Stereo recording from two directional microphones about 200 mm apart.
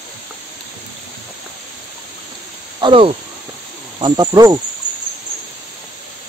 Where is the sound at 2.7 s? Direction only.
25° right (ahead or behind).